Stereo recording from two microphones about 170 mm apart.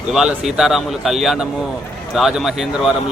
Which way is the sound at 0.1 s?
Centre (ahead or behind).